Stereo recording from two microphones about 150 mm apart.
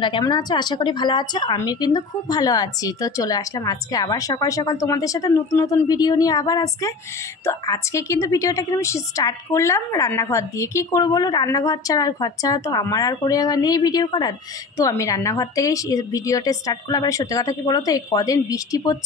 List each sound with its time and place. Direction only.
0.0 s a woman's voice: 30° left (ahead or behind)